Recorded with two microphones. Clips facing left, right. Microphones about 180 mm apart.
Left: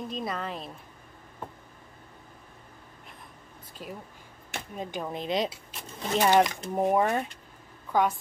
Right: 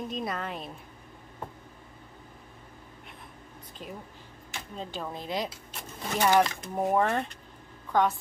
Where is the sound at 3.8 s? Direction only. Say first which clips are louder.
Left 1 dB; 10° left (ahead or behind).